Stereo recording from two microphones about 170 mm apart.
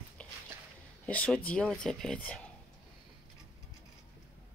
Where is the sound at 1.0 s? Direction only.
10° left (ahead or behind).